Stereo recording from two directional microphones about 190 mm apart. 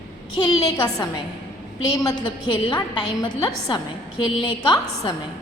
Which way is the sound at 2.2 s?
25° left (ahead or behind).